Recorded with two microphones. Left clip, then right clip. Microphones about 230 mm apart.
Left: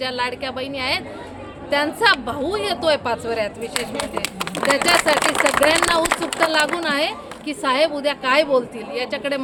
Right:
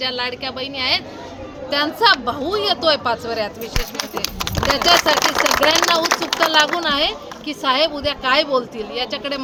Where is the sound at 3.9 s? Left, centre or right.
Right.